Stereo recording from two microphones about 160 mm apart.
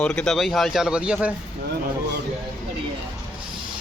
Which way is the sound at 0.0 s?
5° left (ahead or behind).